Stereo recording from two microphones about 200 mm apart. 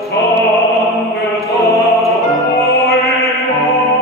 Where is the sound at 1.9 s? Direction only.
Centre (ahead or behind).